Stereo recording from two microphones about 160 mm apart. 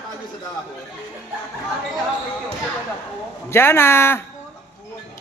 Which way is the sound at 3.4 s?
15° left (ahead or behind).